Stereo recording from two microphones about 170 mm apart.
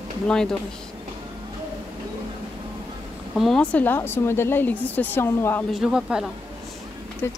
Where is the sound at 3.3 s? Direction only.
Centre (ahead or behind).